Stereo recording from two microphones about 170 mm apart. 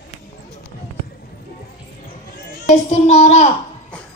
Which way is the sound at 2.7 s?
40° left (ahead or behind).